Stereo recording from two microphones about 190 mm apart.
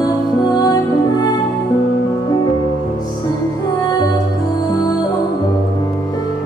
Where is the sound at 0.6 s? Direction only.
20° left (ahead or behind).